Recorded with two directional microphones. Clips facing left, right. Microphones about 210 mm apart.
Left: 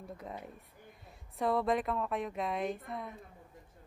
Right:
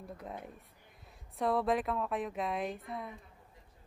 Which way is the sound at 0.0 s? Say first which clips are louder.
Even; centre (ahead or behind).